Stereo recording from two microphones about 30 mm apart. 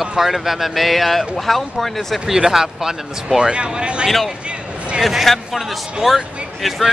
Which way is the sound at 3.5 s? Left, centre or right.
Right.